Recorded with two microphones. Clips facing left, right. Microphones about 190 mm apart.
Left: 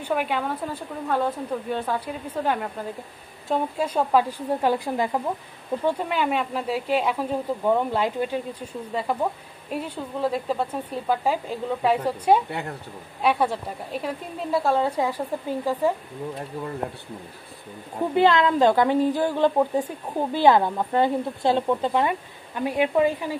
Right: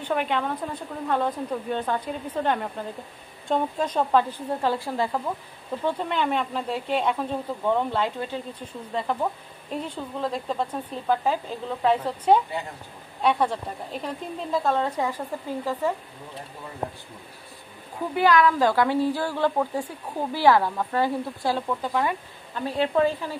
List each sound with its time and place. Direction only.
0.0 s speech: 5° left (ahead or behind)
12.4 s speech: 65° left (ahead or behind)
13.2 s speech: 5° left (ahead or behind)
18.1 s a woman's voice: 25° left (ahead or behind)